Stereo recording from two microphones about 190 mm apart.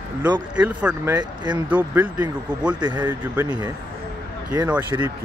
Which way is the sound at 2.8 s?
25° right (ahead or behind).